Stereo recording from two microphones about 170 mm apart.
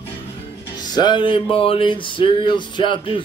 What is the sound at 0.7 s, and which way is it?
Music, 25° left (ahead or behind).